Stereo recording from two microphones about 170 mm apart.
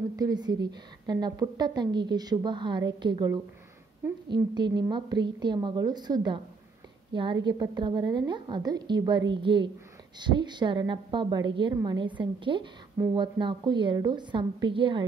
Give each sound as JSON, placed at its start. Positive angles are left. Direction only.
{"t": 0.1, "sound": "a woman's voice", "side_deg": -25}
{"t": 4.0, "sound": "a woman's voice", "side_deg": -15}
{"t": 4.7, "sound": "a woman's voice", "side_deg": -25}